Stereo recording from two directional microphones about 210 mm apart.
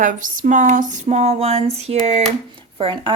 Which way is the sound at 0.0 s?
40° right (ahead or behind).